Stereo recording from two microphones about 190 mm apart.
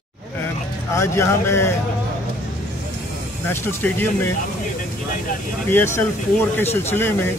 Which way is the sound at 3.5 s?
10° left (ahead or behind).